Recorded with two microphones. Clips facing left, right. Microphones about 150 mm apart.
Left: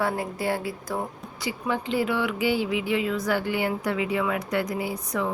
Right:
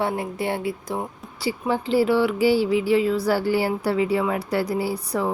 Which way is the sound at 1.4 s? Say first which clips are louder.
Right 4 dB; 30° right (ahead or behind).